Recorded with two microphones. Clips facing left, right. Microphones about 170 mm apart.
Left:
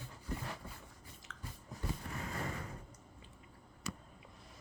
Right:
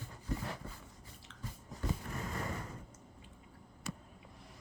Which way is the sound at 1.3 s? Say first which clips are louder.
Left 1 dB; 80° left.